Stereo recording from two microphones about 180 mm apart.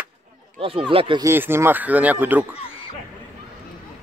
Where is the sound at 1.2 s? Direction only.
15° right (ahead or behind).